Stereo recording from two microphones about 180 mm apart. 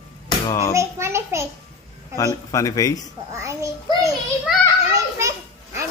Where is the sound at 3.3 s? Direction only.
15° right (ahead or behind).